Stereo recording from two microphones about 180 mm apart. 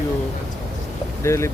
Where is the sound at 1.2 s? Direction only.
15° left (ahead or behind).